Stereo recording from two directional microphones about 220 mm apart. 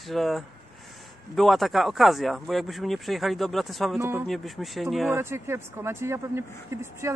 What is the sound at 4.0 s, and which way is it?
Speech, 10° right (ahead or behind).